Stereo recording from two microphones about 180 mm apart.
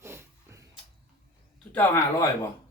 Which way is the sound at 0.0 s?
15° right (ahead or behind).